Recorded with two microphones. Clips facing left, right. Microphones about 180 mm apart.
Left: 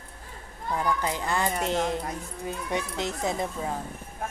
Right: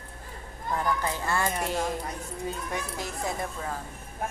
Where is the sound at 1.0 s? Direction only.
15° left (ahead or behind).